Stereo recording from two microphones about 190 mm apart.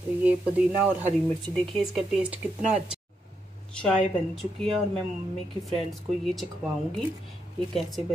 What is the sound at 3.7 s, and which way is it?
Speech, 5° left (ahead or behind).